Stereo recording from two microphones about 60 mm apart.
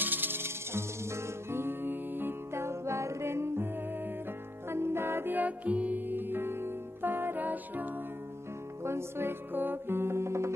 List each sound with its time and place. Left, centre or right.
0.0 s music: right
4.6 s music: right
8.8 s music: right